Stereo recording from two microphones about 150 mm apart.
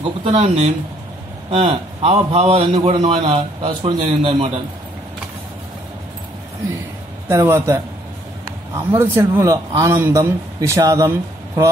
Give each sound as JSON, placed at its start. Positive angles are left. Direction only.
{"t": 0.0, "sound": "a man's voice", "side_deg": -40}
{"t": 7.2, "sound": "a man's voice", "side_deg": -15}